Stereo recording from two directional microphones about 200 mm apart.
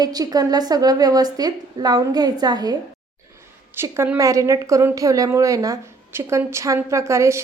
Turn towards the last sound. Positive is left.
turn(degrees=-15)  # may be behind; listen again after turning